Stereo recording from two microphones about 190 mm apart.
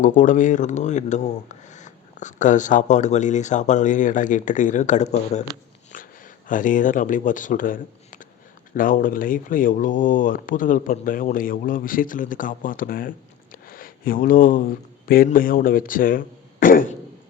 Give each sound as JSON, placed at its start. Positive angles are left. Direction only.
{"t": 0.0, "sound": "speech", "side_deg": 45}
{"t": 5.9, "sound": "a sound", "side_deg": 45}
{"t": 6.5, "sound": "speech", "side_deg": 45}